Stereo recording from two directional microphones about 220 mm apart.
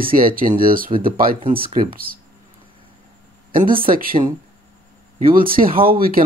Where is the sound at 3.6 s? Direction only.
25° right (ahead or behind).